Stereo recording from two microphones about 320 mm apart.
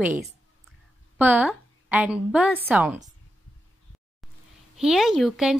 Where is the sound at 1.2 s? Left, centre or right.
Centre.